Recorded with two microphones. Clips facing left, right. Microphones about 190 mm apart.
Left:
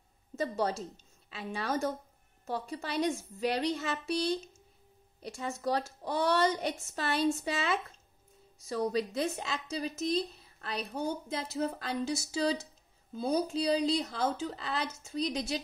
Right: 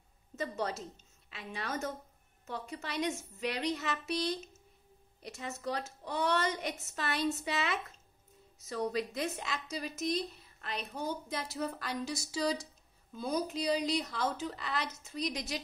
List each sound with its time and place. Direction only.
0.4 s speech: 30° left (ahead or behind)